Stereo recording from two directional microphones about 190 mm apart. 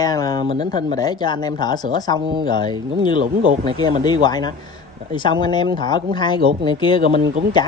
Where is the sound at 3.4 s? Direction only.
45° right (ahead or behind).